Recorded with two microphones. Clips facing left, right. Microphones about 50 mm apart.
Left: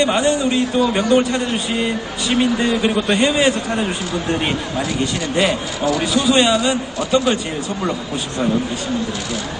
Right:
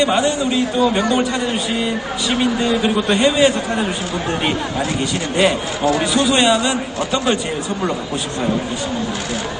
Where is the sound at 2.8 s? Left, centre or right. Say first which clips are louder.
Right 1 dB; centre.